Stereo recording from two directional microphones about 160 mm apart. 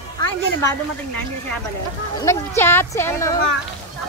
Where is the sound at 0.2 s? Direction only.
20° left (ahead or behind).